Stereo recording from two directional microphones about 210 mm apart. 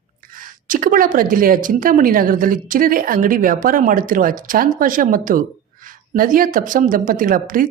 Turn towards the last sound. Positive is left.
turn(degrees=-40)  # may be behind; listen again after turning